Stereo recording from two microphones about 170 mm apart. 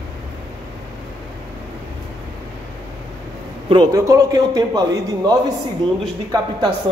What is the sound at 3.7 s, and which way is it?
A man's voice, 25° right (ahead or behind).